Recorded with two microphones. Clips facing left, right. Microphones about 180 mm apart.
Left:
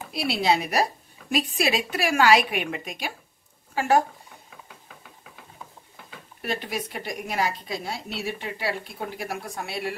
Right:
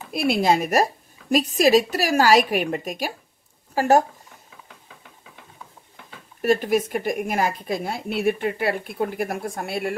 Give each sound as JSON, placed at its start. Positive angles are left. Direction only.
{"t": 0.1, "sound": "a woman's voice", "side_deg": -50}
{"t": 6.4, "sound": "speech", "side_deg": -45}